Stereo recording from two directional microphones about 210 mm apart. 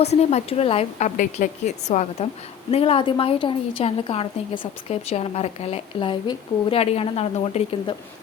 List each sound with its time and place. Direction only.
0.0 s a woman's voice: 30° left (ahead or behind)